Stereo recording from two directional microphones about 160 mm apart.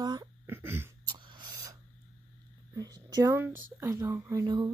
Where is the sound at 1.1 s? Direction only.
25° right (ahead or behind).